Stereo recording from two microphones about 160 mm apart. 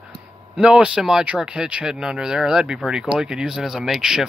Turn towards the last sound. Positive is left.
turn(degrees=-5)  # may be behind; listen again after turning